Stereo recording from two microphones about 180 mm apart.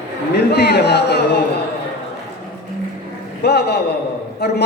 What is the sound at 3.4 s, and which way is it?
A man's voice, 65° left (ahead or behind).